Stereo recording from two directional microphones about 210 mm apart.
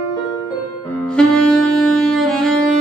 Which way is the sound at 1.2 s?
5° left (ahead or behind).